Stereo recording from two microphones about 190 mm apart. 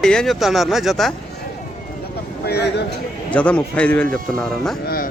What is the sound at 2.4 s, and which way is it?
Speech, 55° left (ahead or behind).